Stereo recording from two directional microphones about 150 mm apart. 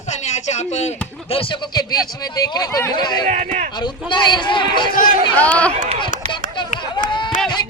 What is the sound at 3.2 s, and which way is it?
Speech, 60° right (ahead or behind).